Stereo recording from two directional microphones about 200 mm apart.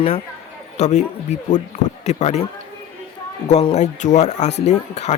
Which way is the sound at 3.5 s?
35° left (ahead or behind).